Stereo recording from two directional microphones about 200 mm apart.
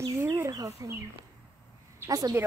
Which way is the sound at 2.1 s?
20° right (ahead or behind).